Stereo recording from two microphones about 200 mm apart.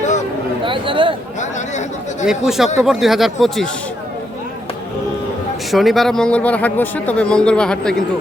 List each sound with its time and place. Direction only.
0.6 s a man's voice: 25° right (ahead or behind)
2.2 s speech: centre (ahead or behind)
5.7 s speech: centre (ahead or behind)